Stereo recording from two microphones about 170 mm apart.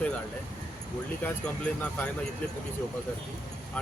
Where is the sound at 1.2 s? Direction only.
10° left (ahead or behind).